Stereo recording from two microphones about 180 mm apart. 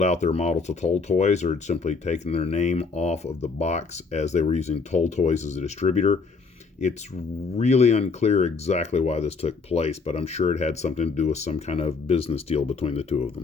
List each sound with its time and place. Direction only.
0.0 s speech: 40° left (ahead or behind)
7.5 s speech: 35° left (ahead or behind)